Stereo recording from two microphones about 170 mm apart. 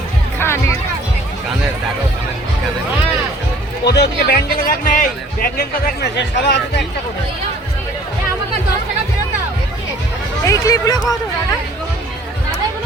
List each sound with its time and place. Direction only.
0.3 s music: 15° left (ahead or behind)
3.8 s speech: 75° left (ahead or behind)
10.4 s speech: 20° left (ahead or behind)